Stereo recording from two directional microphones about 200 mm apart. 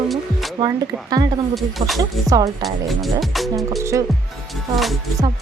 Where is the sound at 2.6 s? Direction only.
Centre (ahead or behind).